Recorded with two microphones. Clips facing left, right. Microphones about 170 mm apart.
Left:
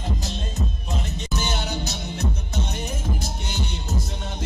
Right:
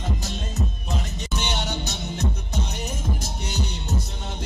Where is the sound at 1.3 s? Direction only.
Centre (ahead or behind).